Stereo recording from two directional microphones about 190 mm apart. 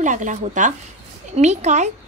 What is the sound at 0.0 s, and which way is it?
Speech, 40° right (ahead or behind).